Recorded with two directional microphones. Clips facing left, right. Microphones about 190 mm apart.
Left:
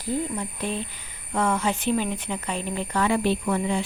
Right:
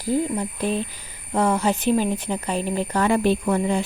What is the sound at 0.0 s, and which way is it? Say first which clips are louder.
Speech: right 5 dB; 35° right (ahead or behind).